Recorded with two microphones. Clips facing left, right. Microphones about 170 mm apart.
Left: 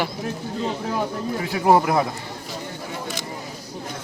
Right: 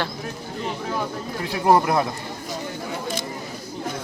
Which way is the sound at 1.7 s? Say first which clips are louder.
Left 1 dB; 5° left (ahead or behind).